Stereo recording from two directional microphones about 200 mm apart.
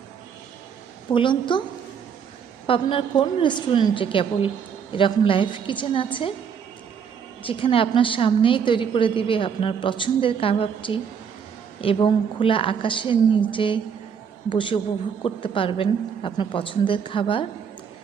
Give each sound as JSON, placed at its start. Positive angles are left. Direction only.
{"t": 1.1, "sound": "a woman's voice", "side_deg": 25}
{"t": 2.6, "sound": "a woman's voice", "side_deg": 25}
{"t": 7.4, "sound": "a woman's voice", "side_deg": 25}